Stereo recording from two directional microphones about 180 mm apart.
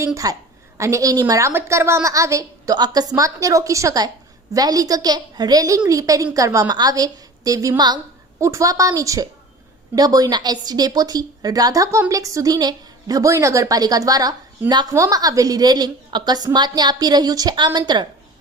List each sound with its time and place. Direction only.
0.0 s a woman's voice: 15° right (ahead or behind)